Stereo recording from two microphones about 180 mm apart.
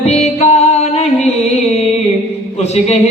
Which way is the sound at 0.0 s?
35° left (ahead or behind).